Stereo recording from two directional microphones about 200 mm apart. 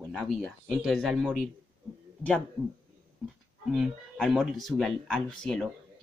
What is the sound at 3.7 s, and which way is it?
Speech, centre (ahead or behind).